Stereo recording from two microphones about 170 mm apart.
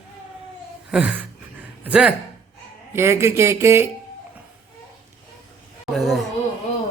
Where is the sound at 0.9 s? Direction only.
5° right (ahead or behind).